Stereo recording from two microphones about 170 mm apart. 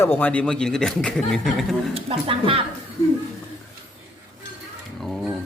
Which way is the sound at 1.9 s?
35° right (ahead or behind).